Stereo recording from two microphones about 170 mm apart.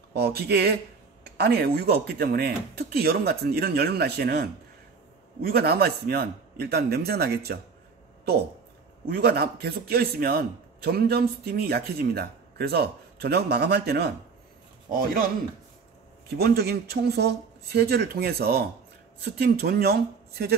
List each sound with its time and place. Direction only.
0.1 s a man's voice: 70° right (ahead or behind)
9.0 s a man's voice: 70° right (ahead or behind)
16.3 s a man's voice: 70° right (ahead or behind)